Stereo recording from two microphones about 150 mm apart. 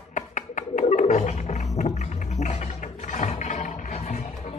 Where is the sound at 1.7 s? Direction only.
50° left (ahead or behind).